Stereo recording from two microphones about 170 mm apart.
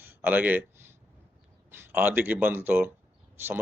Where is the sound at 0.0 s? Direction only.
10° right (ahead or behind).